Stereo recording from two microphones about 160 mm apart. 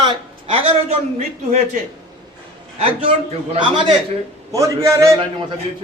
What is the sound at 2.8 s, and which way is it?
A man's voice, 35° right (ahead or behind).